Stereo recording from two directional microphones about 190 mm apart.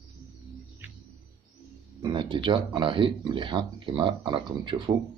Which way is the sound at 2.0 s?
25° right (ahead or behind).